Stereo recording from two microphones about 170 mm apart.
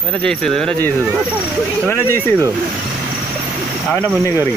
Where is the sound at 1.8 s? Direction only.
15° left (ahead or behind).